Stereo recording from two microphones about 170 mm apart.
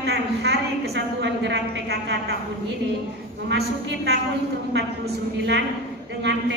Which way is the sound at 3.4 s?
75° right (ahead or behind).